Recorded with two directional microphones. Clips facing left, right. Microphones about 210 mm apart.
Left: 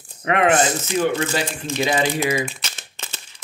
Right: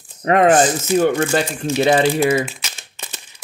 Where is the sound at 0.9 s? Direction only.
50° right (ahead or behind).